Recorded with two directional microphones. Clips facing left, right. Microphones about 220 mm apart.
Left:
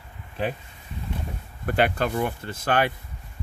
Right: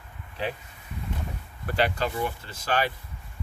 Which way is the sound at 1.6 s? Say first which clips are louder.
Left 3 dB; 55° left (ahead or behind).